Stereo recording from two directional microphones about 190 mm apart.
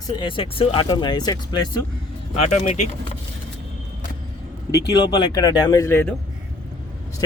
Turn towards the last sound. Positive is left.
turn(degrees=10)  # may be behind; listen again after turning